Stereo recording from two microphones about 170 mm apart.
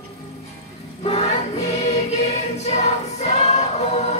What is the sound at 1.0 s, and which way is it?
Choir, 40° left (ahead or behind).